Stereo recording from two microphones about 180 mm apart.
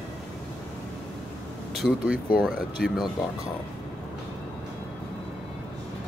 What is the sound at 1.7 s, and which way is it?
Speech, 5° right (ahead or behind).